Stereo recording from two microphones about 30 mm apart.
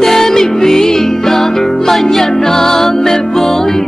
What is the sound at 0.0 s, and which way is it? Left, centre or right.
Music, centre.